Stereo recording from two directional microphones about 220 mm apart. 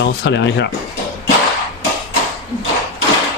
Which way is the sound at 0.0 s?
55° left (ahead or behind).